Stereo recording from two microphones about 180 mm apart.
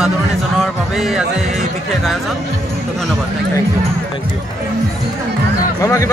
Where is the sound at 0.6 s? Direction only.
Centre (ahead or behind).